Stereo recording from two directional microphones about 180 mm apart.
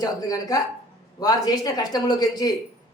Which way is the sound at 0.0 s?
20° left (ahead or behind).